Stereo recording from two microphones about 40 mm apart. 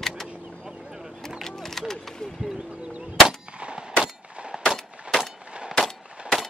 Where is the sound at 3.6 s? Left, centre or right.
Right.